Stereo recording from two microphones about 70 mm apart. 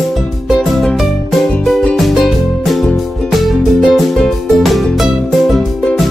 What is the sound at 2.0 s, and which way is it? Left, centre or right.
Music, centre.